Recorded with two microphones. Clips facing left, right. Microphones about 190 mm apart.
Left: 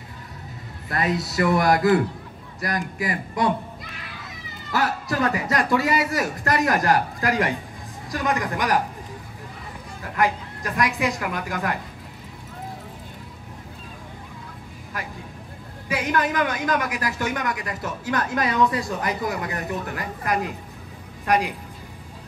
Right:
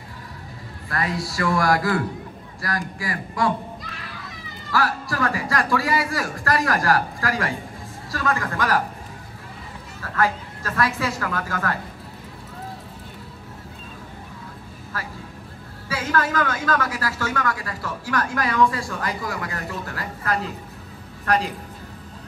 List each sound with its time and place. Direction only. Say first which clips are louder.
0.8 s a man's voice: left 2 dB; 20° left (ahead or behind)
4.6 s a man's voice: even; 20° left (ahead or behind)
10.0 s a woman's voice: even; 15° left (ahead or behind)
14.9 s a woman's voice: even; 15° left (ahead or behind)